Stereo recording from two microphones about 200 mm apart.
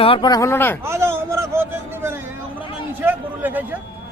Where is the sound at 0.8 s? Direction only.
10° right (ahead or behind).